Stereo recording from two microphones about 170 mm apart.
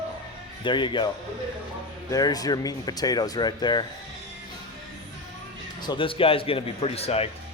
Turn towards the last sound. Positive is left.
turn(degrees=35)  # may be behind; listen again after turning